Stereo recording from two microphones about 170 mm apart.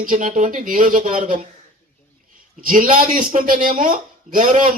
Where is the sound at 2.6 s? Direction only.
55° right (ahead or behind).